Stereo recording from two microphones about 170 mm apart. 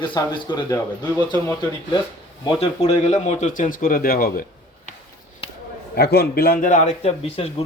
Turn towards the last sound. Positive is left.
turn(degrees=35)  # may be behind; listen again after turning